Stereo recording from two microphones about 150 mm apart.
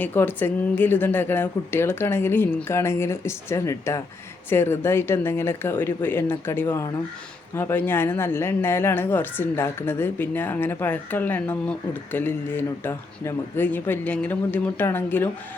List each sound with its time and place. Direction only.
0.0 s speech: 15° left (ahead or behind)